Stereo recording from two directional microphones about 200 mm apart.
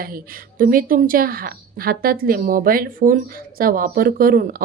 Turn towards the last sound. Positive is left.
turn(degrees=-45)  # may be behind; listen again after turning